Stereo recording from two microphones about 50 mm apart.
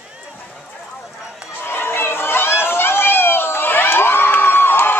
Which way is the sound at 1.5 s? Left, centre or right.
Left.